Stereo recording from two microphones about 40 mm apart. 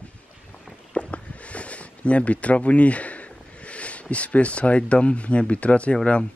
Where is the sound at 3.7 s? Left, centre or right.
Left.